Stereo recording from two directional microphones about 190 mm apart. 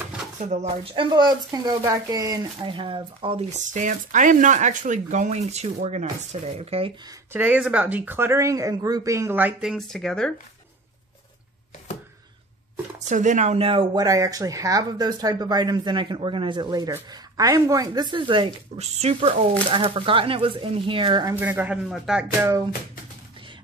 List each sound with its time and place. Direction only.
0.4 s speech: 35° right (ahead or behind)
1.1 s speech: 20° right (ahead or behind)
7.3 s speech: 5° right (ahead or behind)
13.0 s speech: 40° right (ahead or behind); by 21.4 s 20° right (ahead or behind)
21.4 s speech: 10° right (ahead or behind)